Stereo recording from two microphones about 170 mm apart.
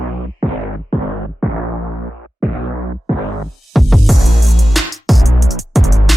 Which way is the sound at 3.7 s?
Centre (ahead or behind).